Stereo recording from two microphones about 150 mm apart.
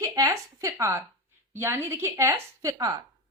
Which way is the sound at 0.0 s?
20° right (ahead or behind).